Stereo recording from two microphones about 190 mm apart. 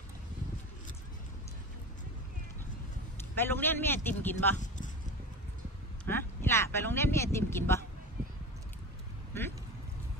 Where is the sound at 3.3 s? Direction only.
10° left (ahead or behind).